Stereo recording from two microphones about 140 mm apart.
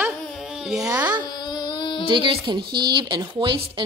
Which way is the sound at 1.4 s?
30° left (ahead or behind).